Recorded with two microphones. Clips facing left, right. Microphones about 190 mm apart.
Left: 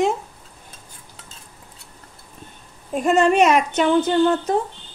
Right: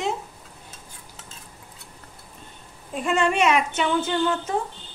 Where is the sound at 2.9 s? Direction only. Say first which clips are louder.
Left 6 dB; 40° left (ahead or behind).